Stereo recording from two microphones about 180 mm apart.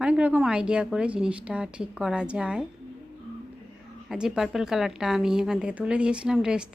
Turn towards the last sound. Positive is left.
turn(degrees=-5)  # may be behind; listen again after turning